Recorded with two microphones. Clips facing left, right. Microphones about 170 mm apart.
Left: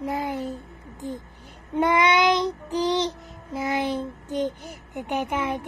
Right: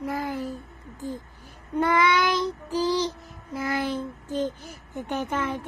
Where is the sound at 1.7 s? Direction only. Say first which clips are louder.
Left 2 dB; 20° left (ahead or behind).